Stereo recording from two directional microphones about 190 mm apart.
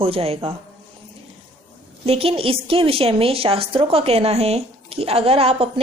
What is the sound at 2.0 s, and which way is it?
A woman's voice, 30° right (ahead or behind).